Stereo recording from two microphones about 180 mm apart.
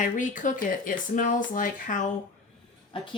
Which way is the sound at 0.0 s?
45° left (ahead or behind).